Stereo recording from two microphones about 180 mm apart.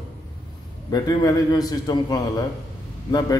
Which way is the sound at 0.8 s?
20° left (ahead or behind).